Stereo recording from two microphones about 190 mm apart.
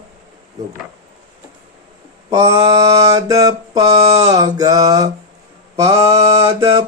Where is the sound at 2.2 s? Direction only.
20° right (ahead or behind).